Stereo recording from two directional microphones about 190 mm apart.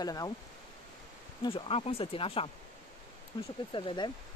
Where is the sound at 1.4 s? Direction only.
30° left (ahead or behind).